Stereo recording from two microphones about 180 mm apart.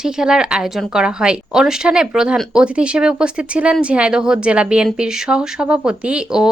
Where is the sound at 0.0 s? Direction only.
5° right (ahead or behind).